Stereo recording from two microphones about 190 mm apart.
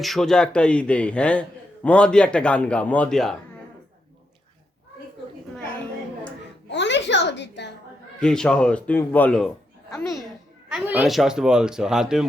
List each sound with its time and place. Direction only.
0.0 s a man's voice: centre (ahead or behind)
6.7 s a sound: 70° left (ahead or behind)
8.2 s a man's voice: 5° left (ahead or behind)
10.7 s a man's voice: 5° right (ahead or behind)